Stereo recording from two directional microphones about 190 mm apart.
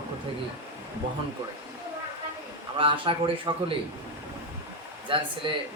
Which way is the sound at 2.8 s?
25° right (ahead or behind).